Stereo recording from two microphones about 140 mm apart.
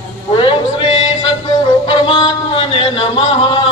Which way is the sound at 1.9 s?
35° left (ahead or behind).